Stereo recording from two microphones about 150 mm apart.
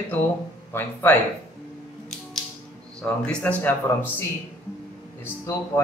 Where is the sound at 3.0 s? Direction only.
10° left (ahead or behind).